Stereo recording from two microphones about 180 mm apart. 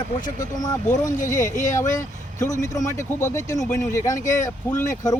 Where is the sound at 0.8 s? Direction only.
45° left (ahead or behind).